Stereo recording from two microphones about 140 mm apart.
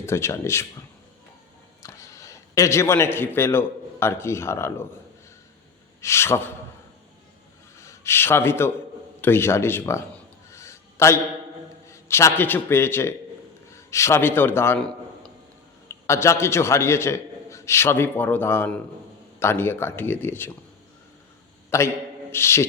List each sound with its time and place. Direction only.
0.0 s a man's voice: 20° left (ahead or behind)
1.8 s a man's voice: 25° left (ahead or behind)
6.0 s a man's voice: 20° left (ahead or behind)
7.8 s speech: 20° left (ahead or behind)
10.5 s a sound: 20° left (ahead or behind)
11.9 s a man's voice: 20° left (ahead or behind)
16.0 s a man's voice: 20° left (ahead or behind)
21.7 s a man's voice: 20° left (ahead or behind)